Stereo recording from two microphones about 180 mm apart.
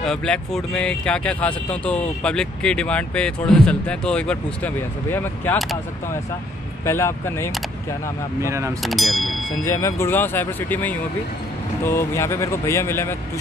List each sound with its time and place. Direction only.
0.0 s speech: 5° left (ahead or behind)
6.9 s speech: 15° left (ahead or behind)
8.4 s speech: 15° right (ahead or behind)
8.8 s speech: centre (ahead or behind)
9.7 s speech: 15° left (ahead or behind)